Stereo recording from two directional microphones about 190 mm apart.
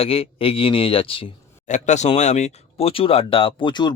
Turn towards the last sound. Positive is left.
turn(degrees=25)  # may be behind; listen again after turning